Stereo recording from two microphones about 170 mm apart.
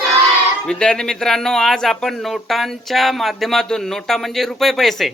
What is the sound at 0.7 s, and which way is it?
Speech, 5° left (ahead or behind).